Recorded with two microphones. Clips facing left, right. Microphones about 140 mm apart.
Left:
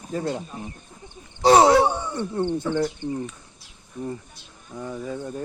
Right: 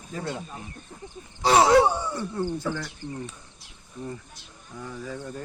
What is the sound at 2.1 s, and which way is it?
Speech, 30° left (ahead or behind).